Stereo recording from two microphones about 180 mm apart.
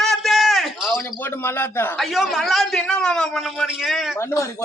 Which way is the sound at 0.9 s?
10° left (ahead or behind).